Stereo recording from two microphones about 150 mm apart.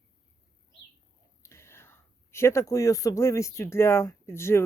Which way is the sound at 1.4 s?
20° left (ahead or behind).